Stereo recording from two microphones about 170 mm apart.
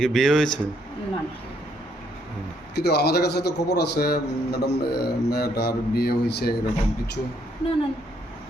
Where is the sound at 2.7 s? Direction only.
75° left (ahead or behind).